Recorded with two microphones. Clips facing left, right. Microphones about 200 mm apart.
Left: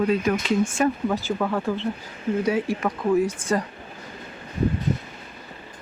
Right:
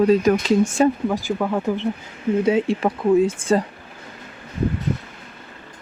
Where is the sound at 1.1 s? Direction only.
15° right (ahead or behind).